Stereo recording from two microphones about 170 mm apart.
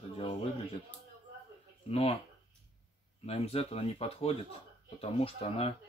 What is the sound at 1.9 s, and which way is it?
Speech, 35° left (ahead or behind).